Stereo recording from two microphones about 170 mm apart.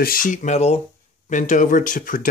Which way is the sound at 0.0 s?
55° left (ahead or behind).